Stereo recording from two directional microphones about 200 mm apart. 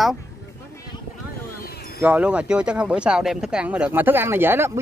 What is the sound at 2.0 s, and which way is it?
Speech, 5° right (ahead or behind).